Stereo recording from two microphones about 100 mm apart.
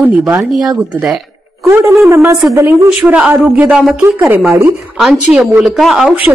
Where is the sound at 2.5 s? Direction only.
30° right (ahead or behind).